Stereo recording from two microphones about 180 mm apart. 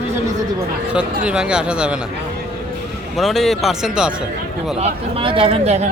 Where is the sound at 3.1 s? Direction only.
Centre (ahead or behind).